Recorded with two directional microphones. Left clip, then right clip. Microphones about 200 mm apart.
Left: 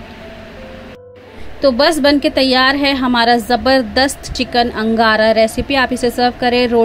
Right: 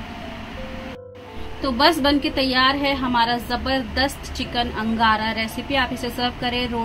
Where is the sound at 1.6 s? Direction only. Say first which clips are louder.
Left 6 dB; 40° left (ahead or behind).